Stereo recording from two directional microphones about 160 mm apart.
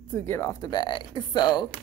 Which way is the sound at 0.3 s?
20° left (ahead or behind).